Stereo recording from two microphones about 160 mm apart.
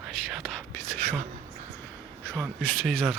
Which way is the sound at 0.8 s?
15° left (ahead or behind).